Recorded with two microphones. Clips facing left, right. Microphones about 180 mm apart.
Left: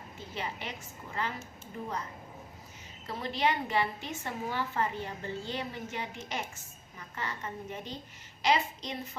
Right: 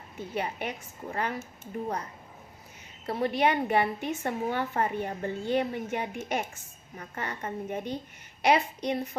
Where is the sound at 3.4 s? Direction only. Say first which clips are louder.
Right 3 dB; 55° right (ahead or behind).